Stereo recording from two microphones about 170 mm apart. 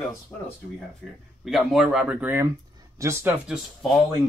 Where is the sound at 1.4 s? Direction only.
Centre (ahead or behind).